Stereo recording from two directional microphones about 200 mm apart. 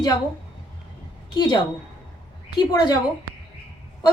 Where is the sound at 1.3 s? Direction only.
20° left (ahead or behind).